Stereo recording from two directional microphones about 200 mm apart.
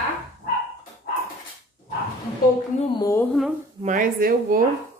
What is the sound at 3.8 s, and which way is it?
Speech, 45° right (ahead or behind).